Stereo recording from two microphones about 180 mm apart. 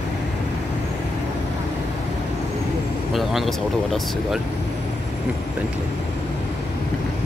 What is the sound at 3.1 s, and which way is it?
Speech, centre (ahead or behind).